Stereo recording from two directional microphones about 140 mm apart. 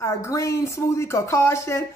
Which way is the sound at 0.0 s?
20° left (ahead or behind).